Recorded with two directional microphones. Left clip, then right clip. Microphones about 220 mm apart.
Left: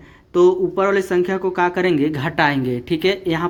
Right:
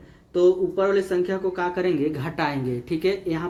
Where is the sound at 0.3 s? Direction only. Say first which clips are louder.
Left 4 dB; 50° left (ahead or behind).